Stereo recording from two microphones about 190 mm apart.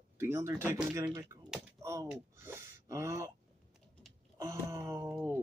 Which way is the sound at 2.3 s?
15° right (ahead or behind).